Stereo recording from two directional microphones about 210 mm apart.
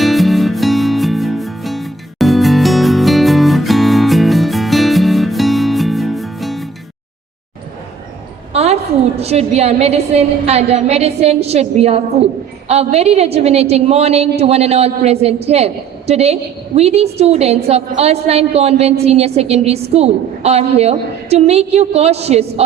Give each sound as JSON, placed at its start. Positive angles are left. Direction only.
{"t": 0.0, "sound": "music", "side_deg": 0}
{"t": 8.5, "sound": "a woman's voice", "side_deg": -30}